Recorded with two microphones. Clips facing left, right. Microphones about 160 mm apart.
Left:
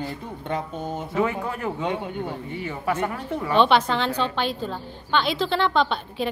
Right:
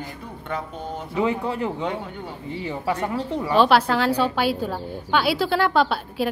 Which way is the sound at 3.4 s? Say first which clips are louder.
Right 1 dB; 5° right (ahead or behind).